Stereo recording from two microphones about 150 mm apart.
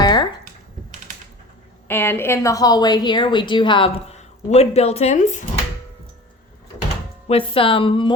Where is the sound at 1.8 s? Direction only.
15° left (ahead or behind); by 3.9 s 35° left (ahead or behind).